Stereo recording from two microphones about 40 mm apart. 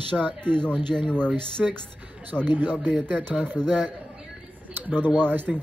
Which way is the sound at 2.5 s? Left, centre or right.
Right.